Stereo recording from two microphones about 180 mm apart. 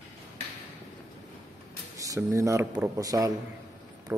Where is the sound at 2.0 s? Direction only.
15° right (ahead or behind).